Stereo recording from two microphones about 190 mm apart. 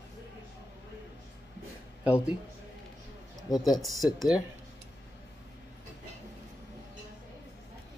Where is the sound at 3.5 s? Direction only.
20° left (ahead or behind).